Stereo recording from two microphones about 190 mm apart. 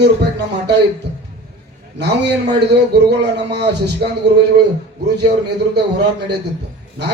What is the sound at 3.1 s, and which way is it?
Speech, 65° right (ahead or behind).